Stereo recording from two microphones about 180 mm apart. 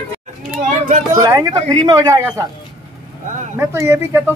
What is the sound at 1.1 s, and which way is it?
Speech, 20° right (ahead or behind).